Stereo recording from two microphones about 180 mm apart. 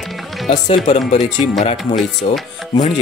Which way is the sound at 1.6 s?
35° left (ahead or behind).